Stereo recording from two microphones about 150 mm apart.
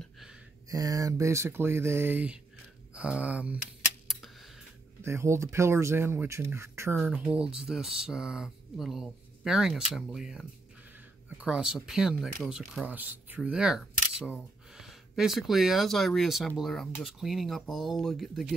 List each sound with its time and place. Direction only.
0.7 s speech: 25° right (ahead or behind)
5.0 s speech: 20° right (ahead or behind)
7.0 s speech: 5° right (ahead or behind)